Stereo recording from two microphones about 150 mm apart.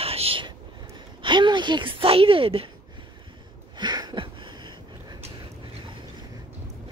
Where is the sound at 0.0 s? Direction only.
40° right (ahead or behind).